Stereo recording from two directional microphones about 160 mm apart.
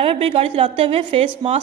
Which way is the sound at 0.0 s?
35° right (ahead or behind).